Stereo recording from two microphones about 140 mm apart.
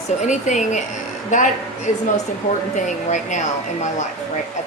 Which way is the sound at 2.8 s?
60° left (ahead or behind).